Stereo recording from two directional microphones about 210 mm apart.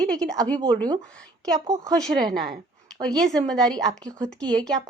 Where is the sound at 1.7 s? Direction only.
15° right (ahead or behind).